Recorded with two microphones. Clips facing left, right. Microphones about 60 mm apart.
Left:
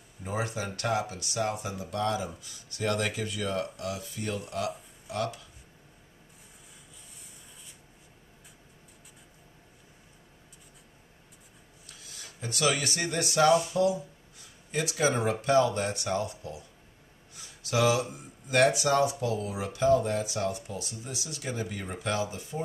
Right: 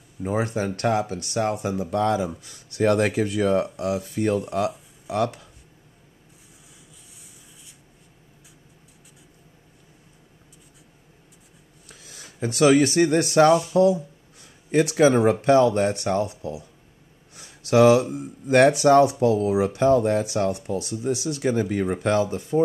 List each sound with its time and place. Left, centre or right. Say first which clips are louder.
0.2 s speech: right 8 dB; right
3.3 s speech: right 10 dB; right
12.2 s speech: right 11 dB; right